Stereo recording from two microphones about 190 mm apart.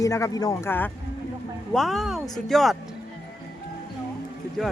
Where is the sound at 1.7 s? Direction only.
Centre (ahead or behind).